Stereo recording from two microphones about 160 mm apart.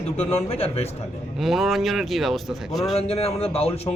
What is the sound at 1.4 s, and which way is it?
Speech, centre (ahead or behind).